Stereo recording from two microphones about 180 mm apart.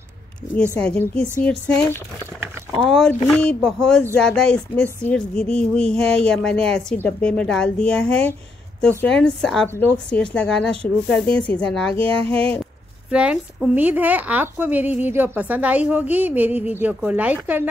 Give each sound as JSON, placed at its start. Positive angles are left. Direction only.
{"t": 0.7, "sound": "speech", "side_deg": 5}
{"t": 11.9, "sound": "music", "side_deg": -30}
{"t": 13.1, "sound": "a woman's voice", "side_deg": -5}